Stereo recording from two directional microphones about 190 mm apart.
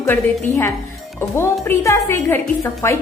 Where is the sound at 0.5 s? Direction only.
10° left (ahead or behind).